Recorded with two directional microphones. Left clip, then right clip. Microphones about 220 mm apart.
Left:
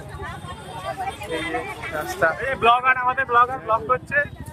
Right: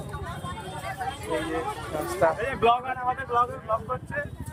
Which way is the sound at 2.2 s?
10° right (ahead or behind).